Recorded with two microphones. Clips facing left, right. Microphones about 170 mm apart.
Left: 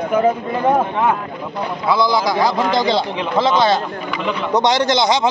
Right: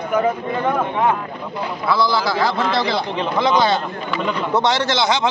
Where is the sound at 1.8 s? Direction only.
15° left (ahead or behind).